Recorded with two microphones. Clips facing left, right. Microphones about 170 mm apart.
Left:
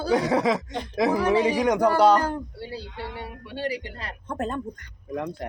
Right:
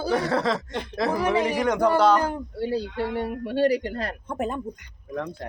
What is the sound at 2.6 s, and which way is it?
Speech, 45° right (ahead or behind).